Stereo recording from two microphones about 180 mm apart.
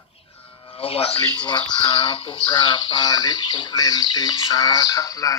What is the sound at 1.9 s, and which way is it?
Speech, 30° left (ahead or behind).